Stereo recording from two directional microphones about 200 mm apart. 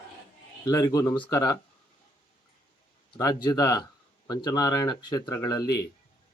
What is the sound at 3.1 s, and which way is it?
Speech, 20° left (ahead or behind).